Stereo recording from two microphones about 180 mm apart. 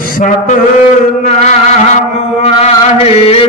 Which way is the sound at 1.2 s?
40° left (ahead or behind).